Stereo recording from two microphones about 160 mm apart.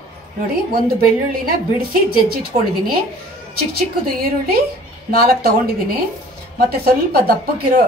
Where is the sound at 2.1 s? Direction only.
70° right (ahead or behind).